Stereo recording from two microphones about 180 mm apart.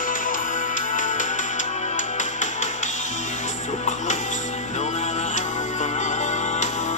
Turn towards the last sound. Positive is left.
turn(degrees=40)  # may be behind; listen again after turning